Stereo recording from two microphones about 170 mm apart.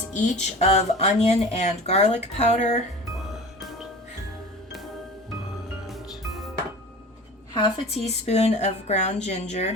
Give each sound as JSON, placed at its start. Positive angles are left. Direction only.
{"t": 0.1, "sound": "speech", "side_deg": 45}
{"t": 7.5, "sound": "a woman's voice", "side_deg": 30}
{"t": 8.0, "sound": "speech", "side_deg": 40}